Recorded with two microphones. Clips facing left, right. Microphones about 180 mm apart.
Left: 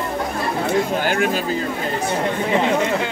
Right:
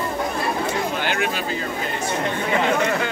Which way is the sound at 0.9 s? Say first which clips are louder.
Left 4 dB; 45° left (ahead or behind).